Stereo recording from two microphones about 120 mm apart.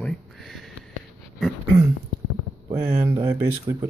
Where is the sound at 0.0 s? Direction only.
5° left (ahead or behind).